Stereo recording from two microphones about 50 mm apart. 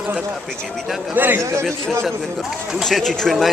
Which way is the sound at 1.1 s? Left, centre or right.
Right.